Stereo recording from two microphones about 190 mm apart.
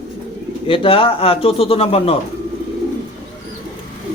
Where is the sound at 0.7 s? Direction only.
30° left (ahead or behind).